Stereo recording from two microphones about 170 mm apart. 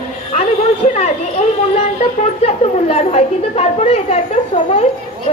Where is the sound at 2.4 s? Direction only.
40° left (ahead or behind).